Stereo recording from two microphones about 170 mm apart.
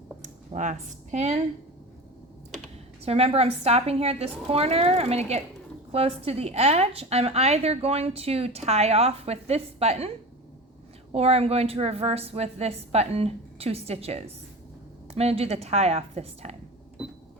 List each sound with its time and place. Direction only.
0.2 s speech: 45° right (ahead or behind)
3.0 s a woman's voice: 35° right (ahead or behind)
11.1 s a woman's voice: 35° right (ahead or behind)